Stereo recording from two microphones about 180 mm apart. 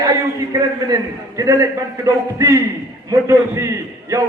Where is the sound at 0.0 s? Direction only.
20° right (ahead or behind).